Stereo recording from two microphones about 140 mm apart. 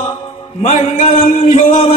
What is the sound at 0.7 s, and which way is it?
Music, 50° left (ahead or behind).